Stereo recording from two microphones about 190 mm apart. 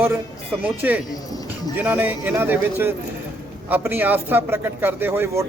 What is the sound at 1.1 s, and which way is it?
Music, 20° left (ahead or behind).